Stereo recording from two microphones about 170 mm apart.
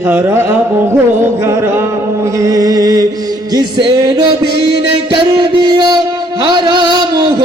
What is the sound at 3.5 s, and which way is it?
Music, 25° right (ahead or behind).